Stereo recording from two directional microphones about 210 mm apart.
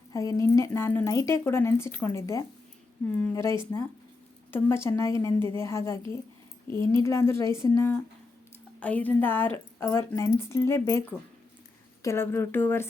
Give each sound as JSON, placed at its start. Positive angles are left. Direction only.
{"t": 0.1, "sound": "a woman's voice", "side_deg": 15}
{"t": 4.5, "sound": "a woman's voice", "side_deg": 10}
{"t": 12.0, "sound": "a woman's voice", "side_deg": 10}